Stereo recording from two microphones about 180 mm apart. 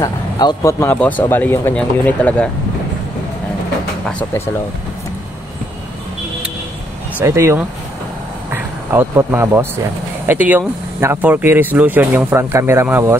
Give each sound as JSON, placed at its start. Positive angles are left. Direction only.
{"t": 0.0, "sound": "speech", "side_deg": 20}
{"t": 7.2, "sound": "speech", "side_deg": -15}